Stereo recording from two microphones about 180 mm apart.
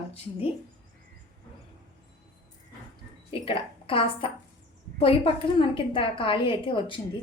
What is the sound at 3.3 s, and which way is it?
A woman's voice, 30° left (ahead or behind).